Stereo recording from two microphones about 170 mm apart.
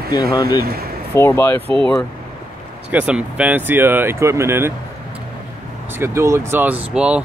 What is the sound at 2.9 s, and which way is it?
Speech, 10° right (ahead or behind).